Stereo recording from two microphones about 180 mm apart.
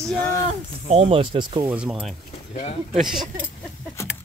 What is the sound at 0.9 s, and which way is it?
Speech, 30° right (ahead or behind).